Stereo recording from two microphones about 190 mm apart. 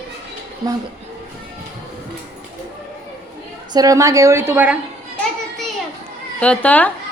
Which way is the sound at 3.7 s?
20° right (ahead or behind).